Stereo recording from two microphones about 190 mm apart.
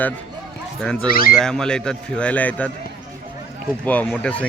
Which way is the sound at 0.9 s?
50° left (ahead or behind).